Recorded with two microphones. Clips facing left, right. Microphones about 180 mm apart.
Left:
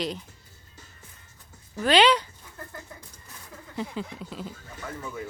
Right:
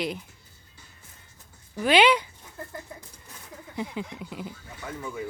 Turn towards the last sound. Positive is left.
turn(degrees=-15)  # may be behind; listen again after turning